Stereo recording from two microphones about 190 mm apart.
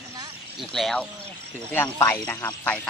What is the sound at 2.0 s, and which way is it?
Speech, 10° left (ahead or behind).